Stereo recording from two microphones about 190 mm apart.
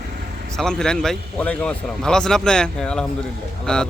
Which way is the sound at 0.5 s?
5° left (ahead or behind).